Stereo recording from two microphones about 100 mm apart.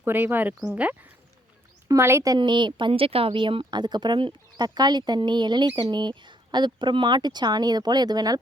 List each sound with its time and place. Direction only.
0.0 s speech: 20° right (ahead or behind)
1.9 s a woman's voice: 25° right (ahead or behind)
2.4 s speech: 50° right (ahead or behind)